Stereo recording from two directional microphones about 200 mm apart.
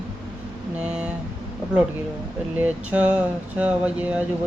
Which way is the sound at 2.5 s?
10° right (ahead or behind).